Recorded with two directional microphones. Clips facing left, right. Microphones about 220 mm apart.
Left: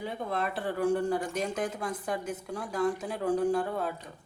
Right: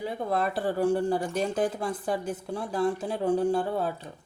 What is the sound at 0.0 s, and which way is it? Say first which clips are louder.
Speech: right 4 dB; 35° right (ahead or behind).